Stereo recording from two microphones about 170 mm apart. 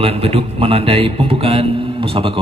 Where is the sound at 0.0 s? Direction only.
35° right (ahead or behind).